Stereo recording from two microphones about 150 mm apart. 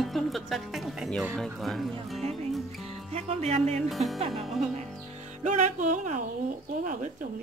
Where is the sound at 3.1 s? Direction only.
45° right (ahead or behind).